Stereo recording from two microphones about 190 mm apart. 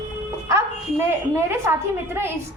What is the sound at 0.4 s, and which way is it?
Music, 15° right (ahead or behind).